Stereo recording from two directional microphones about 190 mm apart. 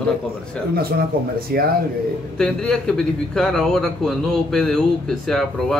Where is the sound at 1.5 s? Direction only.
50° right (ahead or behind).